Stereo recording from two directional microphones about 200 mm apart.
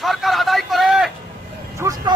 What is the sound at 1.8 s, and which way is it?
Vehicle, 15° right (ahead or behind).